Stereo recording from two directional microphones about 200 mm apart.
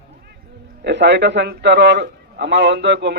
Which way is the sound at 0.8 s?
60° right (ahead or behind).